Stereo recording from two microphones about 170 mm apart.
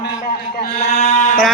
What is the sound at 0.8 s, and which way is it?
Sheep, 40° left (ahead or behind).